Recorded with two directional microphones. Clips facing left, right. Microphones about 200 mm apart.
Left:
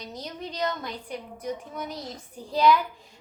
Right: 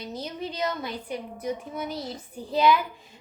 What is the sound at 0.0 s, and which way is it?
Speech, 5° right (ahead or behind).